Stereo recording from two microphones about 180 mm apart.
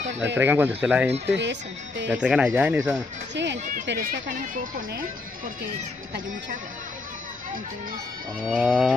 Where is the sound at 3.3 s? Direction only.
75° right (ahead or behind).